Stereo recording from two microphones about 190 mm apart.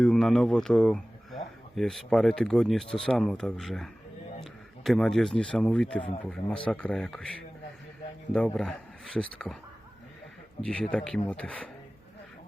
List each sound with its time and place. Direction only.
0.0 s speech: 5° left (ahead or behind)
8.3 s speech: 5° left (ahead or behind)
10.9 s speech: 5° left (ahead or behind)